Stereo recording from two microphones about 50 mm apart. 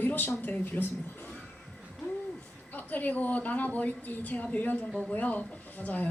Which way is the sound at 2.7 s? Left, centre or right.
Left.